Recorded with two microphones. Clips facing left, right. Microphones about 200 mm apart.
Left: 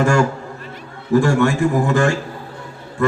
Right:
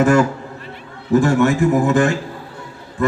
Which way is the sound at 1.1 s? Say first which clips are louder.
Right 1 dB; 20° right (ahead or behind).